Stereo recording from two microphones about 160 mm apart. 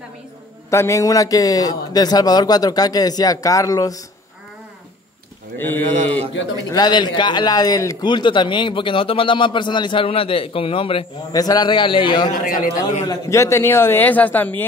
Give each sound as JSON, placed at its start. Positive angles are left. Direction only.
{"t": 0.7, "sound": "a man's voice", "side_deg": 20}
{"t": 5.6, "sound": "a man's voice", "side_deg": 10}
{"t": 6.7, "sound": "a man's voice", "side_deg": 25}
{"t": 11.3, "sound": "a man's voice", "side_deg": 25}
{"t": 13.0, "sound": "a man's voice", "side_deg": 20}